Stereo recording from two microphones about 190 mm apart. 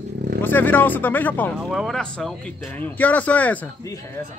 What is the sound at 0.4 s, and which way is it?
Speech, 10° left (ahead or behind).